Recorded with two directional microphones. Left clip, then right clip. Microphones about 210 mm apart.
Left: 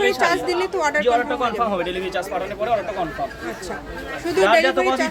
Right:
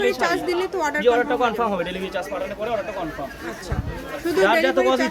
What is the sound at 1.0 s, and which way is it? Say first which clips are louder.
Speech: right 1 dB; 45° right (ahead or behind).